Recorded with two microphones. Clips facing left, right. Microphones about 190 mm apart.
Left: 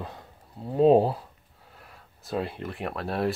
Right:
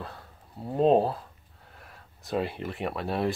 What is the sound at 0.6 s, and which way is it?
Speech, centre (ahead or behind).